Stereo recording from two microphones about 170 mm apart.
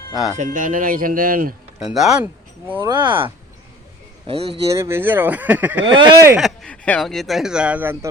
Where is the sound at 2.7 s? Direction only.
25° right (ahead or behind).